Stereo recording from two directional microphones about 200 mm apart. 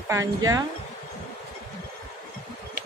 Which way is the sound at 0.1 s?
15° right (ahead or behind).